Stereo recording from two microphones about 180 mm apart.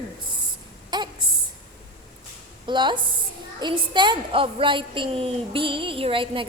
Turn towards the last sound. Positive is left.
turn(degrees=-30)  # may be behind; listen again after turning